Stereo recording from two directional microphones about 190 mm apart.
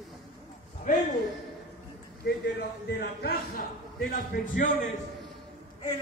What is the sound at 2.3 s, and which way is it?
Speech, 55° left (ahead or behind).